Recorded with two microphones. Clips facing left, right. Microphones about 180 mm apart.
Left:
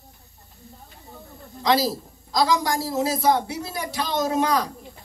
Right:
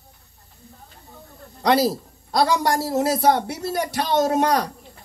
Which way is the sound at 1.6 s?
65° right (ahead or behind).